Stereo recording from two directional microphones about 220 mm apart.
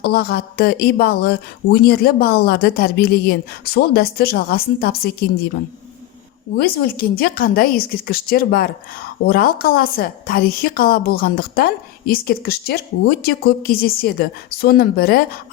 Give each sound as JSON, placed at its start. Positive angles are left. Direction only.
{"t": 0.0, "sound": "a woman's voice", "side_deg": 45}
{"t": 6.6, "sound": "a woman's voice", "side_deg": 40}